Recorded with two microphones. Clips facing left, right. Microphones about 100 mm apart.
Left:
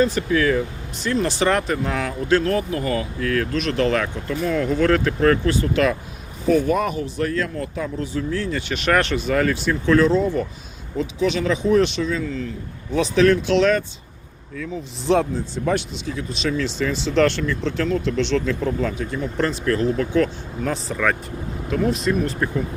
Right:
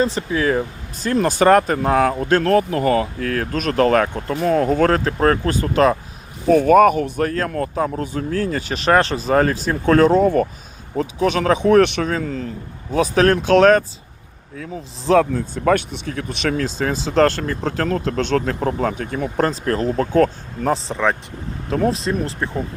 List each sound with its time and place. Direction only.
0.0 s speech: 30° right (ahead or behind)
1.0 s speech: 50° right (ahead or behind)
6.5 s speech: 50° right (ahead or behind)
15.2 s speech: 65° right (ahead or behind)
16.7 s speech: 40° right (ahead or behind)
20.8 s speech: 25° right (ahead or behind)